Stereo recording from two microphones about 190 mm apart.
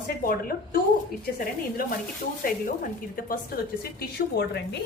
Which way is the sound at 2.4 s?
50° left (ahead or behind).